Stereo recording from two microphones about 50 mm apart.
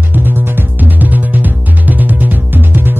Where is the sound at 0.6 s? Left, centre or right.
Right.